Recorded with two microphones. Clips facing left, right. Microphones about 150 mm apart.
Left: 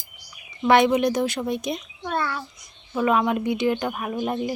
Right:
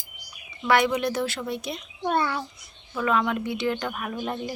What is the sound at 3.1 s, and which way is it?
Speech, 15° left (ahead or behind).